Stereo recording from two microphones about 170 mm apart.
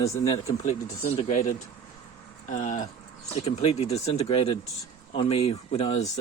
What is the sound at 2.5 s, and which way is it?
Speech, 45° left (ahead or behind).